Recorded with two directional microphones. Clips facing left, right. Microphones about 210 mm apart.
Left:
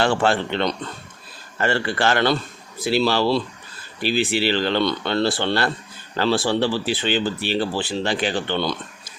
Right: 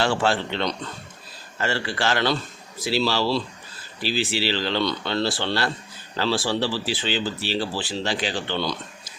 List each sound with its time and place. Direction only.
0.0 s speech: 55° left (ahead or behind)